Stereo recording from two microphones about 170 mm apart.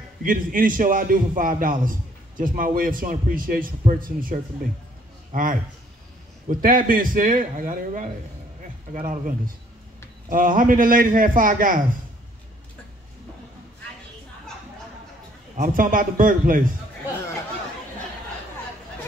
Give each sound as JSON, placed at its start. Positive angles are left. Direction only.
{"t": 0.2, "sound": "a man's voice", "side_deg": -55}
{"t": 6.6, "sound": "a man's voice", "side_deg": -55}
{"t": 10.3, "sound": "a man's voice", "side_deg": -55}
{"t": 15.5, "sound": "a man's voice", "side_deg": -55}